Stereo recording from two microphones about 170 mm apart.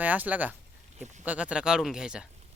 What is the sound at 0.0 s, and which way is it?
Speech, 10° right (ahead or behind).